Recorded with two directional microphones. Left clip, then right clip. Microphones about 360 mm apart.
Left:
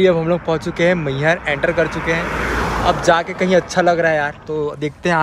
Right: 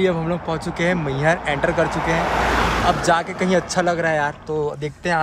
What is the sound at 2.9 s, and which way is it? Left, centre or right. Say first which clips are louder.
Speech: left 3 dB; centre.